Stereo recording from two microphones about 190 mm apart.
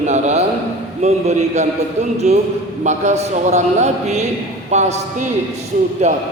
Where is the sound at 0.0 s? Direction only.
40° right (ahead or behind).